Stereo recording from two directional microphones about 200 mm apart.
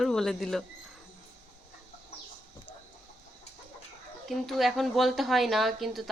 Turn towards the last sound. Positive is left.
turn(degrees=0)  # may be behind; listen again after turning